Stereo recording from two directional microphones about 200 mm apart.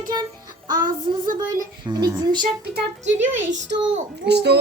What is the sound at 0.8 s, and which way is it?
Speech, 45° right (ahead or behind).